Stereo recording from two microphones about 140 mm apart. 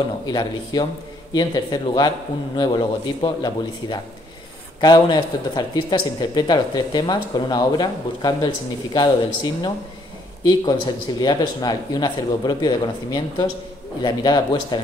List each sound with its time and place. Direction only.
0.3 s speech: 30° left (ahead or behind)